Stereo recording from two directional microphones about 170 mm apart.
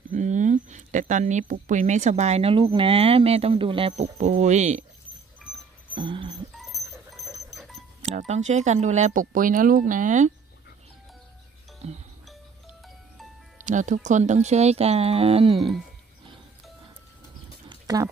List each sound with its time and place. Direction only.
0.1 s speech: 45° right (ahead or behind)
5.9 s a sound: 30° right (ahead or behind)
8.0 s speech: 45° right (ahead or behind)
11.8 s music: 40° right (ahead or behind)
13.7 s speech: 45° right (ahead or behind)
17.6 s a sound: 20° right (ahead or behind)